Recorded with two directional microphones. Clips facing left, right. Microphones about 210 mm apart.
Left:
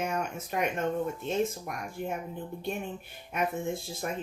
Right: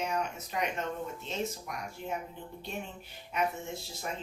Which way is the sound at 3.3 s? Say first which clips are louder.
Left 3 dB; 50° left (ahead or behind).